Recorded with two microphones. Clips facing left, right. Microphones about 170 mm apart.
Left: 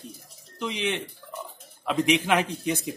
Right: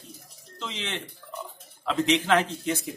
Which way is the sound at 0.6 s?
15° left (ahead or behind).